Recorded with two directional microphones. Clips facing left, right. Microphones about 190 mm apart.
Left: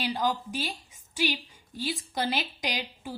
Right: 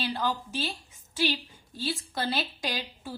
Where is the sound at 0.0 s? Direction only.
15° left (ahead or behind).